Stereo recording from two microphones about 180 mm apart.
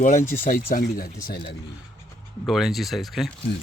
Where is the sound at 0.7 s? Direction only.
50° left (ahead or behind).